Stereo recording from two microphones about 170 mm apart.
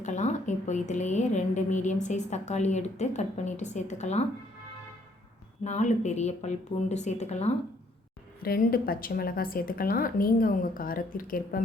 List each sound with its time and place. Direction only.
0.0 s a woman's voice: 45° left (ahead or behind)
5.6 s a woman's voice: 45° left (ahead or behind)
8.4 s a woman's voice: 60° left (ahead or behind)